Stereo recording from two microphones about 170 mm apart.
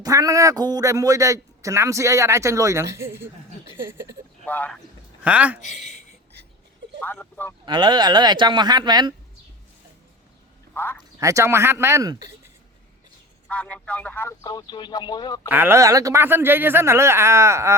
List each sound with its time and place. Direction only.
0.0 s a man's voice: 20° right (ahead or behind)
4.4 s speech: 10° left (ahead or behind)
5.2 s speech: 10° right (ahead or behind)
6.4 s a sound: 75° right (ahead or behind)
7.0 s speech: 10° left (ahead or behind)
7.6 s a man's voice: 25° right (ahead or behind)
10.8 s a man's voice: 15° left (ahead or behind)
11.2 s speech: 20° right (ahead or behind)
13.5 s speech: 10° left (ahead or behind)
14.4 s speech: 25° left (ahead or behind)
15.4 s speech: 10° right (ahead or behind)